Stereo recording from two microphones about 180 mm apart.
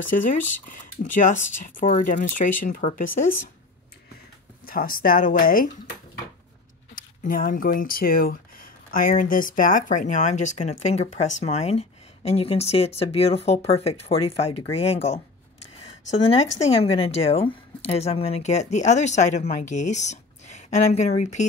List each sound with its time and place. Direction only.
0.1 s speech: 45° left (ahead or behind)
4.6 s speech: 50° left (ahead or behind)
7.0 s speech: 50° left (ahead or behind)